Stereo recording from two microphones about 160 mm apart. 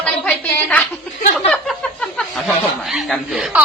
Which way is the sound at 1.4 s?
5° left (ahead or behind).